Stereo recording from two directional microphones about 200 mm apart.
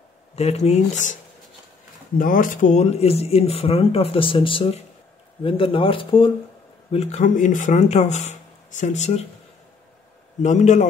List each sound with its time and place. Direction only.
0.4 s speech: 30° left (ahead or behind)
2.1 s speech: 45° left (ahead or behind)
10.4 s speech: 35° left (ahead or behind)